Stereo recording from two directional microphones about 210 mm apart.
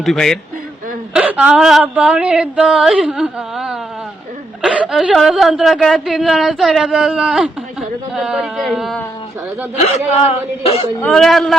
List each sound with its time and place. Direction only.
0.0 s a woman's voice: centre (ahead or behind)
10.1 s speech: 30° left (ahead or behind)
11.0 s a woman's voice: centre (ahead or behind)